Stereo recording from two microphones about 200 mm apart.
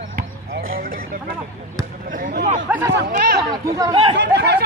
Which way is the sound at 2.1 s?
50° right (ahead or behind).